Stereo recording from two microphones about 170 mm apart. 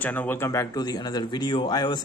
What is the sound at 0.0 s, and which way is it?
A man's voice, 10° left (ahead or behind).